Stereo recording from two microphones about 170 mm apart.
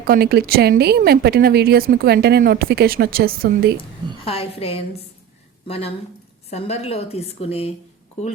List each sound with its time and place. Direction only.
0.1 s speech: 65° right (ahead or behind)
3.8 s a woman's voice: 35° left (ahead or behind)